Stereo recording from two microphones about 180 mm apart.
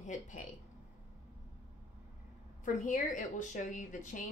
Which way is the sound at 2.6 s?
45° left (ahead or behind).